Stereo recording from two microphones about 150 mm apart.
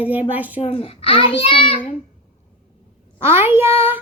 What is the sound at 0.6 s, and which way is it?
A child's voice, 40° left (ahead or behind).